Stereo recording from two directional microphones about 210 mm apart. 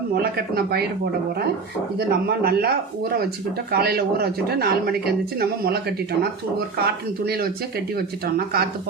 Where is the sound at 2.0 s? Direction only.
45° right (ahead or behind).